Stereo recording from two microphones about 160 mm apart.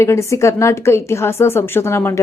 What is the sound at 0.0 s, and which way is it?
A woman's voice, 15° left (ahead or behind).